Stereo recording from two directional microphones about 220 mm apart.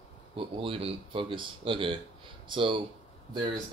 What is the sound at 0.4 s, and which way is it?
Speech, 25° right (ahead or behind).